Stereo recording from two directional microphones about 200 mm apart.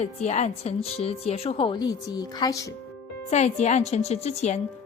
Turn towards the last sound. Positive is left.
turn(degrees=35)  # may be behind; listen again after turning